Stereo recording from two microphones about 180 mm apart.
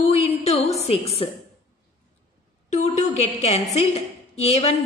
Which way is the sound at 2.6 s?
40° left (ahead or behind).